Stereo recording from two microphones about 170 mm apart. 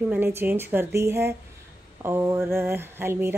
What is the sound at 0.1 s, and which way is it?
A woman's voice, 10° right (ahead or behind).